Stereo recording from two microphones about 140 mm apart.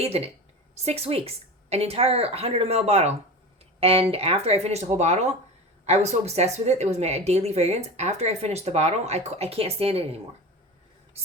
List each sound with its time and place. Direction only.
0.0 s a woman's voice: 45° right (ahead or behind)